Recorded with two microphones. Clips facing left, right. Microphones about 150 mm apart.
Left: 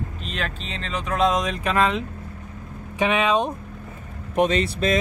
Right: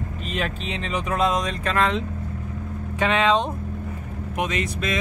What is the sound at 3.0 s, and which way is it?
Speech, 15° left (ahead or behind).